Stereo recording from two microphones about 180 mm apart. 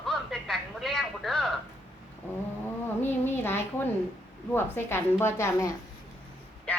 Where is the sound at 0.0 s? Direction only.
Centre (ahead or behind).